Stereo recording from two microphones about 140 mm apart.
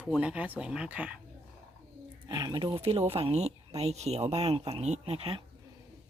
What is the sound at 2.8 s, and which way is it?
Speech, 45° right (ahead or behind).